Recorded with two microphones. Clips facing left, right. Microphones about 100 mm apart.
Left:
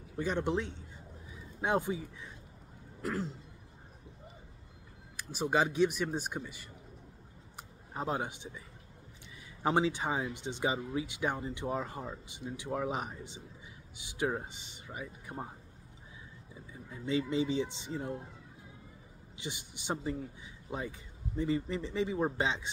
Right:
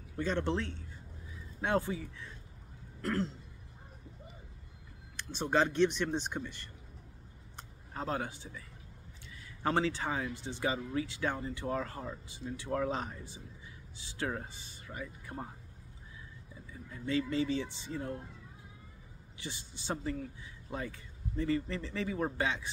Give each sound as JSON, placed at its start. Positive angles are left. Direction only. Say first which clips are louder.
{"t": 0.2, "sound": "speech", "louder": "left 1 dB", "side_deg": 15}
{"t": 3.0, "sound": "throat clearing", "louder": "right 2 dB", "side_deg": 5}
{"t": 5.1, "sound": "speech", "louder": "even", "side_deg": 10}
{"t": 7.5, "sound": "a sound", "louder": "left 2 dB", "side_deg": 15}
{"t": 9.6, "sound": "speech", "louder": "left 2 dB", "side_deg": 15}
{"t": 16.9, "sound": "speech", "louder": "left 1 dB", "side_deg": 20}
{"t": 19.3, "sound": "speech", "louder": "left 2 dB", "side_deg": 15}